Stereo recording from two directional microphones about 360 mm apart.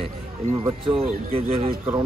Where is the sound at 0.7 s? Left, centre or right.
Centre.